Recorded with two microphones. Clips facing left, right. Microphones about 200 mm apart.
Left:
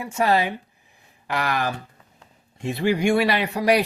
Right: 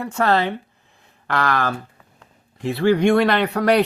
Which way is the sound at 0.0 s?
10° left (ahead or behind).